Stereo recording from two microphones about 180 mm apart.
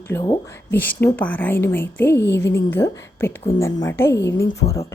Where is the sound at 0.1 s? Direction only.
15° left (ahead or behind).